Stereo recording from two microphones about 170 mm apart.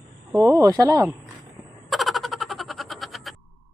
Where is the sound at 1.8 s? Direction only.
Centre (ahead or behind).